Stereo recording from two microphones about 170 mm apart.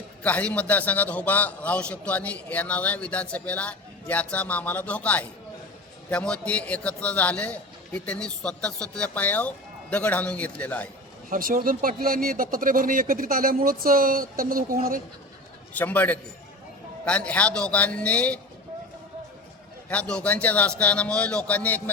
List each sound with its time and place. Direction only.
0.2 s a man's voice: 10° left (ahead or behind)
11.3 s speech: 55° right (ahead or behind)
15.7 s a man's voice: 10° left (ahead or behind)
19.9 s a man's voice: 5° left (ahead or behind)